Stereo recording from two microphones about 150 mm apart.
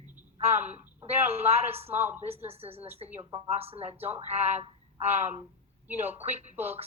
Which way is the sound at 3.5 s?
40° right (ahead or behind).